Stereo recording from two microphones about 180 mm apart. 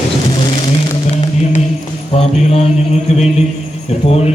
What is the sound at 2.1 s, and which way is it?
Mantra, 35° left (ahead or behind).